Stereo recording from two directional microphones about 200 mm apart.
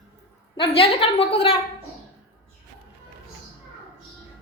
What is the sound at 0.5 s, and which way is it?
A woman's voice, 25° left (ahead or behind).